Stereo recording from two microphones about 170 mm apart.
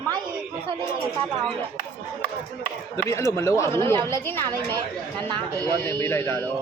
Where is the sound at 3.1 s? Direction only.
15° left (ahead or behind).